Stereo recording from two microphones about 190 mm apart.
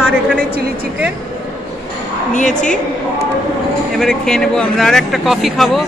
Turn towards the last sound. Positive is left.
turn(degrees=0)  # may be behind; listen again after turning